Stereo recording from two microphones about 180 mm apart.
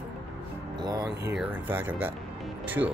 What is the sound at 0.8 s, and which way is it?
Speech, 20° right (ahead or behind).